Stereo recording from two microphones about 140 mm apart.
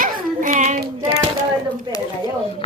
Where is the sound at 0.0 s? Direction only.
60° right (ahead or behind).